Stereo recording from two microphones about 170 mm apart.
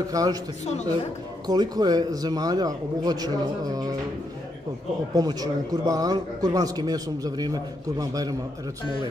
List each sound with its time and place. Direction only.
0.1 s a man's voice: 20° right (ahead or behind)
1.5 s a man's voice: 25° right (ahead or behind)
5.1 s a man's voice: 20° right (ahead or behind)